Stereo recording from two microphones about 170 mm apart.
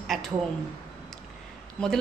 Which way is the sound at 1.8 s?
5° left (ahead or behind).